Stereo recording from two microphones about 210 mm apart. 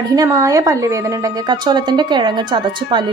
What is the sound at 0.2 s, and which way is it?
A woman's voice, 15° right (ahead or behind).